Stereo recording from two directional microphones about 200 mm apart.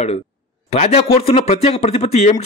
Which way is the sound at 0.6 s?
30° left (ahead or behind).